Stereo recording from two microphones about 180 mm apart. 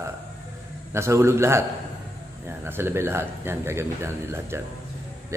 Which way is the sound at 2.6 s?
15° right (ahead or behind).